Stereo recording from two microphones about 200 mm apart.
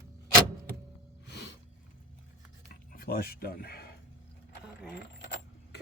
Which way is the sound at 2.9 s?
50° left (ahead or behind).